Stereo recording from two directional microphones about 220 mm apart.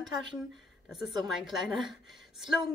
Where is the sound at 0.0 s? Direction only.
Centre (ahead or behind).